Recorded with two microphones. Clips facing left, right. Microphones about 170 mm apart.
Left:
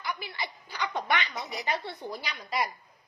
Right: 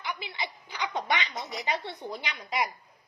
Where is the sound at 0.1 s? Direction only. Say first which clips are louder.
Even; 20° right (ahead or behind).